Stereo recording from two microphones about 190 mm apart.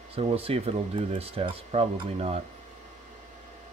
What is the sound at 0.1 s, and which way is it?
Speech, 30° right (ahead or behind).